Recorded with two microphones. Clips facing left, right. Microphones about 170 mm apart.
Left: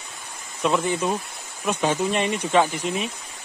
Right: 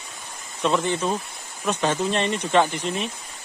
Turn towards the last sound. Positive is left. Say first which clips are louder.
# even
turn(degrees=5)  # may be behind; listen again after turning